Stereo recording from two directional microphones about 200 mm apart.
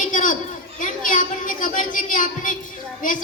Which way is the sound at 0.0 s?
40° left (ahead or behind).